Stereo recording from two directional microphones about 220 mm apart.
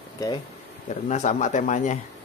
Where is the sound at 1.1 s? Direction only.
35° left (ahead or behind).